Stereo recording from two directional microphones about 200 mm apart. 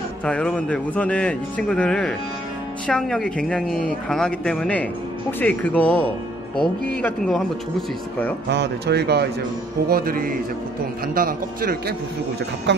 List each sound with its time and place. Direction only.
0.2 s speech: 5° left (ahead or behind)
8.5 s speech: 55° right (ahead or behind)
12.7 s speech: 65° right (ahead or behind)